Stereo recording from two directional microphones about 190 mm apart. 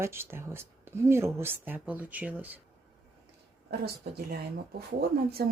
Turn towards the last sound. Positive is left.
turn(degrees=-55)  # may be behind; listen again after turning